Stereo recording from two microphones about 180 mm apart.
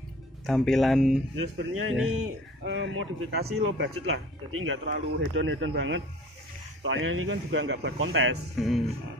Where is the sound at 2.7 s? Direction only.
90° right; by 3.9 s 70° right (ahead or behind).